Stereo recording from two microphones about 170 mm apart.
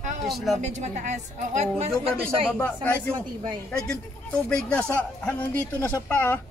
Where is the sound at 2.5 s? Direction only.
10° left (ahead or behind).